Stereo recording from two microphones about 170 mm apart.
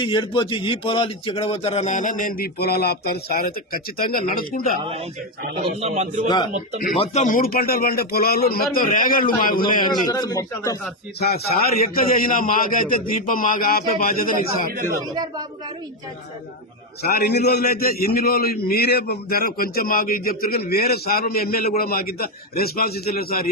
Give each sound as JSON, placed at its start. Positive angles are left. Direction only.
{"t": 0.0, "sound": "a man's voice", "side_deg": 30}
{"t": 5.8, "sound": "a man's voice", "side_deg": -40}
{"t": 6.2, "sound": "speech", "side_deg": 25}
{"t": 7.0, "sound": "a man's voice", "side_deg": 40}
{"t": 8.7, "sound": "a man's voice", "side_deg": 55}
{"t": 9.9, "sound": "speech", "side_deg": 25}
{"t": 11.2, "sound": "a man's voice", "side_deg": 65}
{"t": 15.0, "sound": "a man's voice", "side_deg": -25}
{"t": 17.0, "sound": "a man's voice", "side_deg": 65}